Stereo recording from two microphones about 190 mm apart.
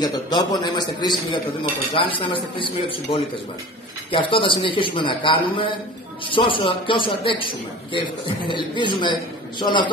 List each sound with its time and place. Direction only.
0.0 s a man's voice: 20° left (ahead or behind)